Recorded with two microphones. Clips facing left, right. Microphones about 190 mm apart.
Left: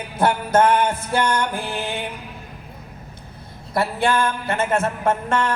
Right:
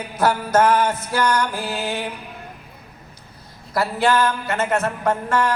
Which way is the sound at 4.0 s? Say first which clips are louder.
Right 3 dB; 55° left (ahead or behind).